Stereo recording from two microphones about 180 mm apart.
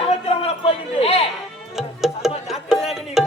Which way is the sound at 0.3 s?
30° left (ahead or behind).